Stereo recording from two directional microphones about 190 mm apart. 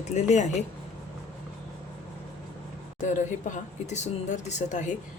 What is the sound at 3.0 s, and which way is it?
Speech, 40° left (ahead or behind).